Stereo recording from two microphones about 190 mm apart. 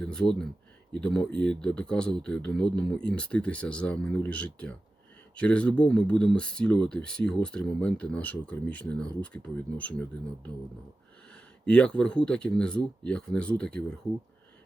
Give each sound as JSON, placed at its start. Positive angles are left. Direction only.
{"t": 0.0, "sound": "speech", "side_deg": 5}
{"t": 11.6, "sound": "speech", "side_deg": 5}